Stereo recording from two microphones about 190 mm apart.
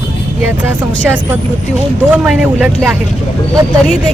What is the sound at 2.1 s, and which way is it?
Speech, 5° right (ahead or behind).